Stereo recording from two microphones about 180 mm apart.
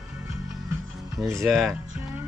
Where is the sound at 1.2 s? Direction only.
15° right (ahead or behind).